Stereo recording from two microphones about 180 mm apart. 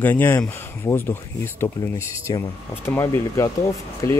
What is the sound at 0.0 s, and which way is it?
Speech, 10° left (ahead or behind).